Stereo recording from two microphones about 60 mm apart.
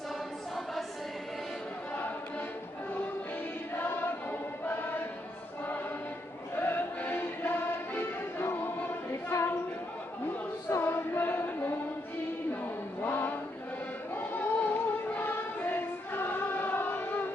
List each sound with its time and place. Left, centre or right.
3.7 s choir: left
6.5 s music: left
9.3 s a sound: left
10.8 s music: left
13.0 s a sound: left
14.1 s music: left